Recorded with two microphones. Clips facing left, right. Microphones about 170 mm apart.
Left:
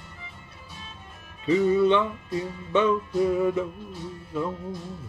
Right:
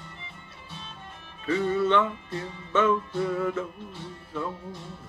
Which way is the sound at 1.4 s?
15° left (ahead or behind).